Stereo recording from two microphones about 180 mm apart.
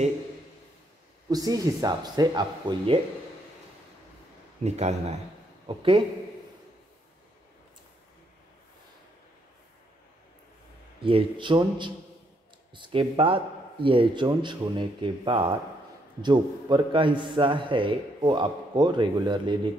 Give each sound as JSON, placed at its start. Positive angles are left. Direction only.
{"t": 1.3, "sound": "a man's voice", "side_deg": -20}
{"t": 4.6, "sound": "a man's voice", "side_deg": -40}
{"t": 11.0, "sound": "a man's voice", "side_deg": -30}